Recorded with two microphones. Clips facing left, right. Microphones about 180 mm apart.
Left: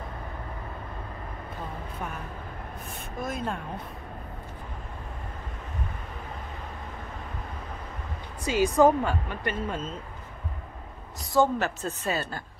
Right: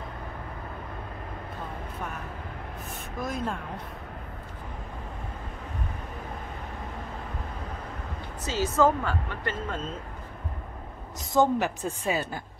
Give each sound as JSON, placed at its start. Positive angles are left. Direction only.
{"t": 3.2, "sound": "speech", "side_deg": 0}
{"t": 8.5, "sound": "speech", "side_deg": 15}
{"t": 11.3, "sound": "a woman's voice", "side_deg": -15}